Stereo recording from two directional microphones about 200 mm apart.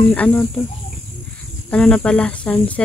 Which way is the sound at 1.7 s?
5° left (ahead or behind).